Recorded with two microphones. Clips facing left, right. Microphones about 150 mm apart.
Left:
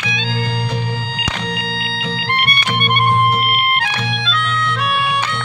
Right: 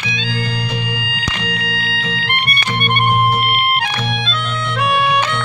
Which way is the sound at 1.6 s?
30° left (ahead or behind).